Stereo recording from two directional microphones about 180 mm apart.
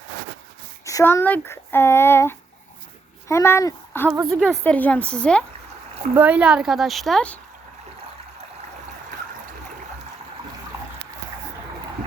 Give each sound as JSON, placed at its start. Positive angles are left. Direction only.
{"t": 0.9, "sound": "speech", "side_deg": 15}
{"t": 6.1, "sound": "speech", "side_deg": -10}